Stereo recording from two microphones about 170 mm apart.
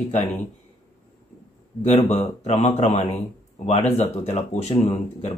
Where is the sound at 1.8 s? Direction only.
40° left (ahead or behind).